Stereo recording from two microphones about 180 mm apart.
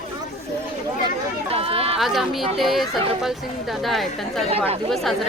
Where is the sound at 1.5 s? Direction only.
30° right (ahead or behind).